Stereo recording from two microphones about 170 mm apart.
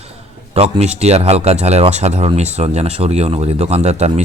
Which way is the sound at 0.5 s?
40° right (ahead or behind).